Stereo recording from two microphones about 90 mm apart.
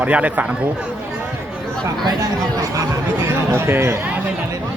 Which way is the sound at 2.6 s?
40° right (ahead or behind).